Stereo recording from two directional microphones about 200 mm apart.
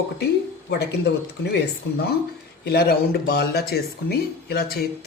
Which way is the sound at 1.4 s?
55° left (ahead or behind).